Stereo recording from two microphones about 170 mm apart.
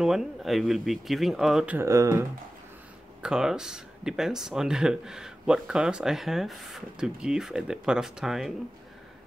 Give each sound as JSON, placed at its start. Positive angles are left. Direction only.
{"t": 0.0, "sound": "speech", "side_deg": 0}
{"t": 1.8, "sound": "speech", "side_deg": -15}
{"t": 3.2, "sound": "speech", "side_deg": -5}